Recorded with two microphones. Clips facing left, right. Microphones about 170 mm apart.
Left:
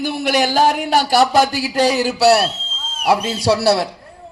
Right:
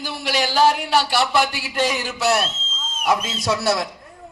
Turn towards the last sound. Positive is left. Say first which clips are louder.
# left 6 dB
turn(degrees=30)  # may be behind; listen again after turning